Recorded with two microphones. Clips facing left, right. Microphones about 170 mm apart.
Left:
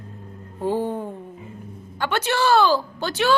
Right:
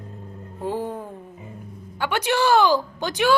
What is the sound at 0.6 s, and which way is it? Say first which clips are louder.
Music: left 4 dB; centre (ahead or behind).